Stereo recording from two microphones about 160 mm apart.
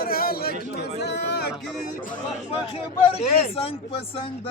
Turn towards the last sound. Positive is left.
turn(degrees=35)  # may be behind; listen again after turning